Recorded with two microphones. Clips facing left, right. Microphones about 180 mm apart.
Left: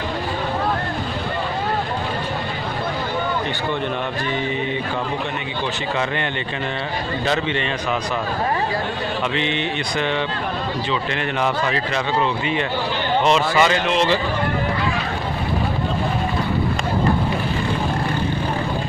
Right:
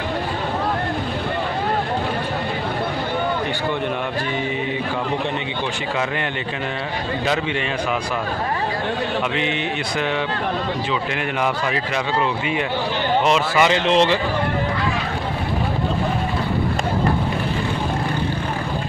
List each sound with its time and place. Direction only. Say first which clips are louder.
9.4 s a sound: even; 5° right (ahead or behind)
13.2 s a man's voice: left 2 dB; 5° right (ahead or behind)
13.7 s speech: right 3 dB; 25° right (ahead or behind)